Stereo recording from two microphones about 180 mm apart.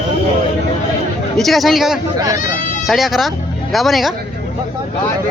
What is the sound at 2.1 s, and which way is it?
Speech, 20° right (ahead or behind).